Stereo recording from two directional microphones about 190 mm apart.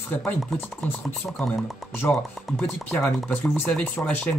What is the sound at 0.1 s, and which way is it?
Speech, 5° left (ahead or behind).